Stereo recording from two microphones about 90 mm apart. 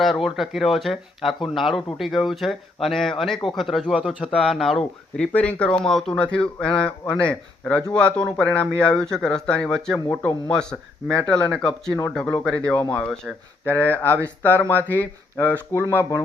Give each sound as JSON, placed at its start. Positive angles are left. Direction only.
{"t": 0.0, "sound": "speech", "side_deg": 0}
{"t": 13.7, "sound": "speech", "side_deg": 20}